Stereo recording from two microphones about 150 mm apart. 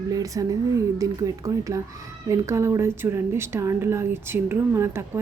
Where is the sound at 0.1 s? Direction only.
25° right (ahead or behind).